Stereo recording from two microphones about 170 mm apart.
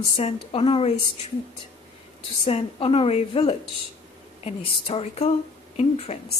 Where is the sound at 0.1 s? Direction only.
35° left (ahead or behind).